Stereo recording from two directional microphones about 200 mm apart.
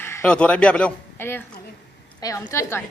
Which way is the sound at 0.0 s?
10° left (ahead or behind).